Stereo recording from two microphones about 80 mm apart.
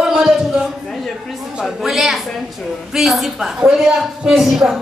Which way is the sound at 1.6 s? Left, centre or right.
Centre.